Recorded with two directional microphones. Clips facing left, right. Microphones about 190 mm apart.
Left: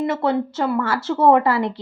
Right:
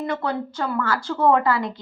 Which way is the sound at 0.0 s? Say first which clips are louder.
Left 5 dB; 25° left (ahead or behind).